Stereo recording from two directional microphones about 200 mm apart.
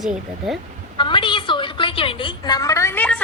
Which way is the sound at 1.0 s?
25° left (ahead or behind).